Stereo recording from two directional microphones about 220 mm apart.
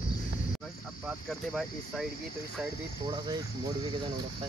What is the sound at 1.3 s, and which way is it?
Speech, centre (ahead or behind).